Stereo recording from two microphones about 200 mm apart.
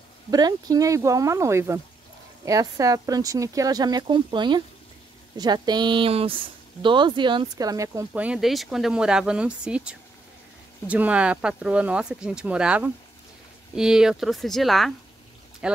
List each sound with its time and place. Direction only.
0.3 s speech: 20° right (ahead or behind)